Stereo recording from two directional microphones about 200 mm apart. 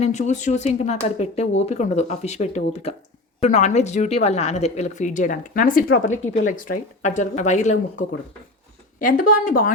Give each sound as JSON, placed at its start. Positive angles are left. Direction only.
{"t": 0.0, "sound": "a woman's voice", "side_deg": 35}